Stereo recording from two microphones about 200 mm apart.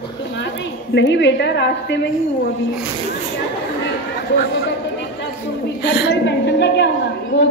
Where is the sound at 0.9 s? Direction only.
60° left (ahead or behind).